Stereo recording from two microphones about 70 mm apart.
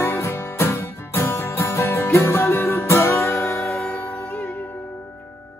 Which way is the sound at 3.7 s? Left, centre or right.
Centre.